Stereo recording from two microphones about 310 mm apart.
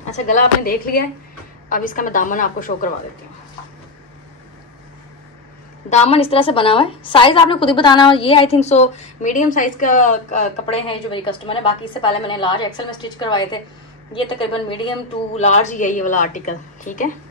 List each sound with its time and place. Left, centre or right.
0.1 s a woman's voice: left
5.9 s a woman's voice: left